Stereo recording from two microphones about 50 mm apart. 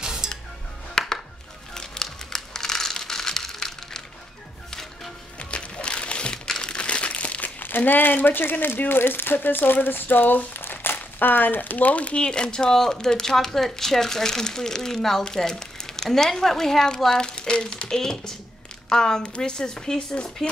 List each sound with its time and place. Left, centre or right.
0.0 s music: centre
0.9 s music: centre
5.4 s music: left
7.6 s speech: left; by 20.4 s centre